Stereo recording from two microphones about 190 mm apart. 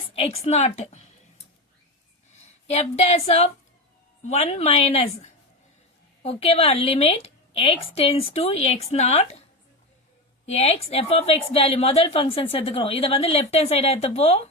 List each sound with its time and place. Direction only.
0.1 s a woman's voice: 30° left (ahead or behind)
2.6 s a woman's voice: 35° left (ahead or behind)
6.2 s a woman's voice: 30° left (ahead or behind)
10.4 s a woman's voice: 35° left (ahead or behind)